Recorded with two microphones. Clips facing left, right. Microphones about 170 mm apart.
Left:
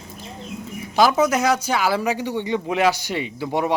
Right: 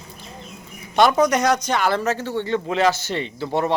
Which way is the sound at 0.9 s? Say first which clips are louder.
Right 1 dB; centre (ahead or behind).